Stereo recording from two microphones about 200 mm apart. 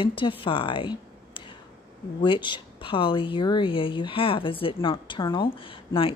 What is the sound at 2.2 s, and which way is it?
A woman's voice, 25° left (ahead or behind).